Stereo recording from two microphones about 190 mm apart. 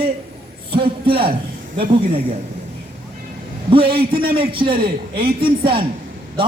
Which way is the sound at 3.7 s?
30° right (ahead or behind).